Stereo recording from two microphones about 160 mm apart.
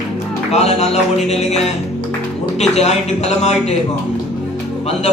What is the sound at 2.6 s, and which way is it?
A man's voice, 45° left (ahead or behind).